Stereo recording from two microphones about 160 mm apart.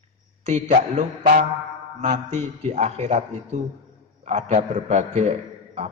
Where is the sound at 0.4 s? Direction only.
45° right (ahead or behind).